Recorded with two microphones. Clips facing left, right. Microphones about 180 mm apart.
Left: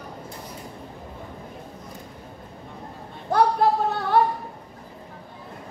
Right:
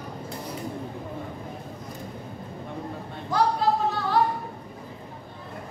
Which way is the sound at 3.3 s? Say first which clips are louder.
Left 4 dB; 60° left (ahead or behind).